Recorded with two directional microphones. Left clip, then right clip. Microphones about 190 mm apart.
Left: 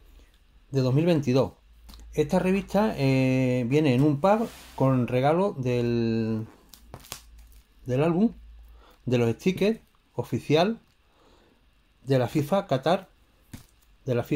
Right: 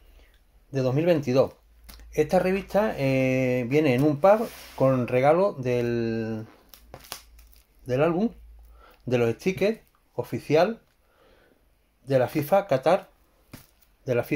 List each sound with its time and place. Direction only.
0.7 s speech: 15° left (ahead or behind)
12.0 s speech: 20° left (ahead or behind)
14.0 s speech: 10° left (ahead or behind)